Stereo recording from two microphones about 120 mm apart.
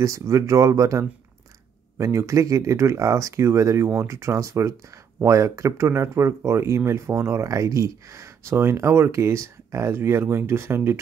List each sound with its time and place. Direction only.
0.0 s speech: 25° right (ahead or behind)